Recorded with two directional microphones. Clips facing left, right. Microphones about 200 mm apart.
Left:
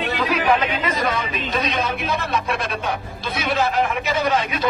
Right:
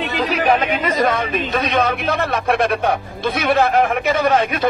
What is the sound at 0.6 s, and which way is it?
A man's voice, 45° right (ahead or behind).